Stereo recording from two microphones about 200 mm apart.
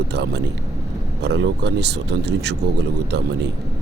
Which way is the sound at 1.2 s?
60° right (ahead or behind).